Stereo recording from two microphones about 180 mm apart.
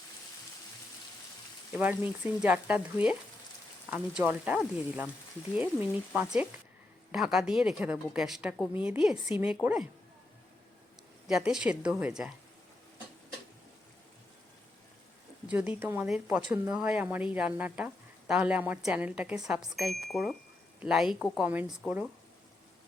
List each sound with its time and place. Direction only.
1.7 s a woman's voice: 10° right (ahead or behind)
11.3 s a woman's voice: 5° right (ahead or behind)
15.4 s speech: 5° right (ahead or behind)